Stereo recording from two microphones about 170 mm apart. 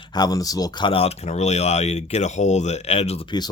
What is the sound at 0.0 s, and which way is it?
Speech, 25° left (ahead or behind).